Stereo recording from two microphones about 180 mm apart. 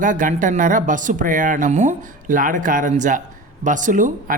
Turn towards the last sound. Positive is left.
turn(degrees=-45)  # may be behind; listen again after turning